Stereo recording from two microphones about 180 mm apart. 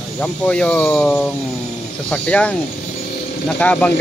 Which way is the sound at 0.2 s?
5° left (ahead or behind).